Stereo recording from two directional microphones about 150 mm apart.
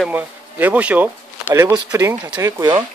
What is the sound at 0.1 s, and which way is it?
Speech, 10° right (ahead or behind).